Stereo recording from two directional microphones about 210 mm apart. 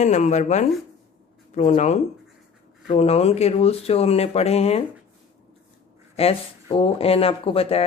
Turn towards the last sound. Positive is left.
turn(degrees=30)  # may be behind; listen again after turning